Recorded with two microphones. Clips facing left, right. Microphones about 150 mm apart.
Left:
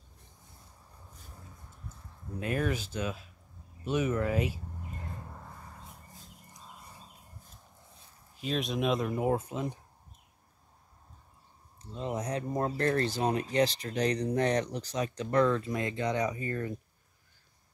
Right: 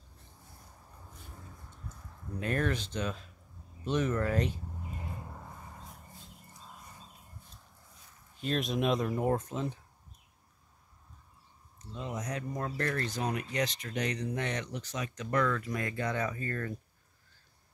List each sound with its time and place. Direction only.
2.4 s speech: 5° left (ahead or behind)
8.4 s speech: centre (ahead or behind)
11.8 s speech: 30° left (ahead or behind)